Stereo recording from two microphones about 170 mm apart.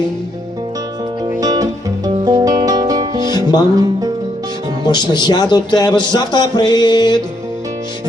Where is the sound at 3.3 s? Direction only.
25° left (ahead or behind).